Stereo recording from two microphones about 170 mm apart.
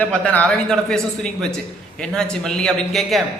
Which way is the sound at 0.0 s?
10° left (ahead or behind).